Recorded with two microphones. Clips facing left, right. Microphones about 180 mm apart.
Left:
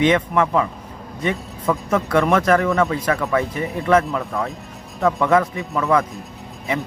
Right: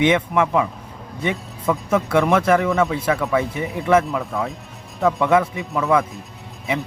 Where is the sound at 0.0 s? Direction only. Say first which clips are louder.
Even; 10° right (ahead or behind).